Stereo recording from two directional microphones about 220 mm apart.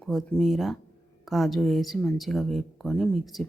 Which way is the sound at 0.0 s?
Centre (ahead or behind).